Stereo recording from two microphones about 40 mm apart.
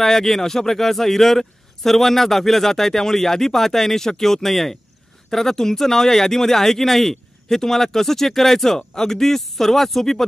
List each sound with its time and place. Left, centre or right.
0.0 s speech: centre